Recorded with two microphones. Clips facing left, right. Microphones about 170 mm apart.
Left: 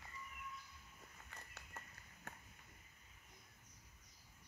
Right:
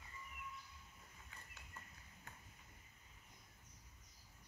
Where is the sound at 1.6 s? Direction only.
75° left (ahead or behind).